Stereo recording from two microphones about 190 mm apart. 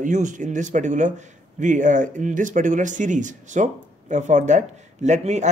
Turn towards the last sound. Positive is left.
turn(degrees=-35)  # may be behind; listen again after turning